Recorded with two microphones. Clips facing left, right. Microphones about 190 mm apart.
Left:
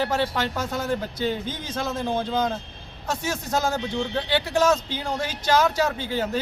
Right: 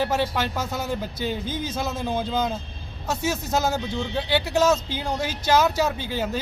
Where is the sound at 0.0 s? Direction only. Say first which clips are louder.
Even; 10° right (ahead or behind).